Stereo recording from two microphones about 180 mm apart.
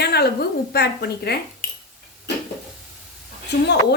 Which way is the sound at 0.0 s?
60° left (ahead or behind).